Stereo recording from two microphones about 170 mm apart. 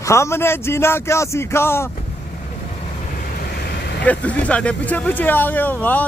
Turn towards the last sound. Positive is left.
turn(degrees=10)  # may be behind; listen again after turning